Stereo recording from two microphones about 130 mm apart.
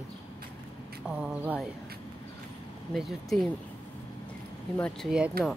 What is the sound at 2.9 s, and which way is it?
Speech, centre (ahead or behind).